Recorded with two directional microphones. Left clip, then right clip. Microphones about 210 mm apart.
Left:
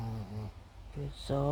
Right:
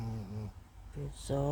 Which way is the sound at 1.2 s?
10° left (ahead or behind).